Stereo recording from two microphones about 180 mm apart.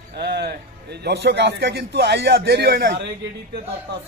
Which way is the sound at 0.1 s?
65° right (ahead or behind).